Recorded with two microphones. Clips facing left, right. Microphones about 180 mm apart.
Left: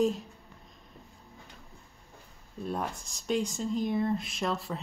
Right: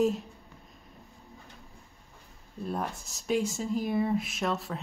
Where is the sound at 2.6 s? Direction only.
Centre (ahead or behind).